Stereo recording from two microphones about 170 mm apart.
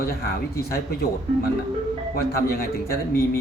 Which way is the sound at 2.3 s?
65° left (ahead or behind).